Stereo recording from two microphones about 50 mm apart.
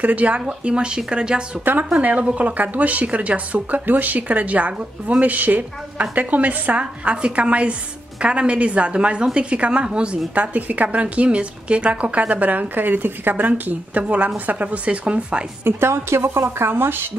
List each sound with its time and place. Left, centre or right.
0.0 s a woman's voice: right
1.6 s a woman's voice: right
1.9 s a woman's voice: right
15.6 s a woman's voice: right